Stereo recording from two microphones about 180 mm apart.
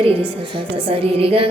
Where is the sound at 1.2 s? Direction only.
30° right (ahead or behind).